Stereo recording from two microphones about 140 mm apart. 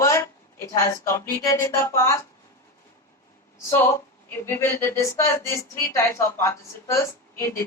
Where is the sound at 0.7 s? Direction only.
20° left (ahead or behind).